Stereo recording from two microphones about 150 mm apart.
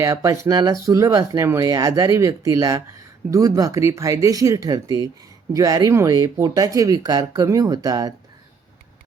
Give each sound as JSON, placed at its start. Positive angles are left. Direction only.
{"t": 0.0, "sound": "speech", "side_deg": -20}